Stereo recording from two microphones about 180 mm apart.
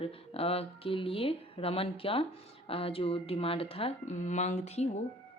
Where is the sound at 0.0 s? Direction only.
35° left (ahead or behind).